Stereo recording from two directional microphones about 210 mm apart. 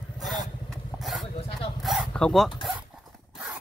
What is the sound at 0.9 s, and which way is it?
Vehicle, centre (ahead or behind).